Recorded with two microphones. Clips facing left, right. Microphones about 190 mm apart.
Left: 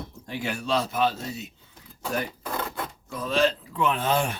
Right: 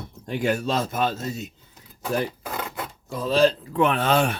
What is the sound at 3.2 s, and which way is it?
Speech, 35° right (ahead or behind).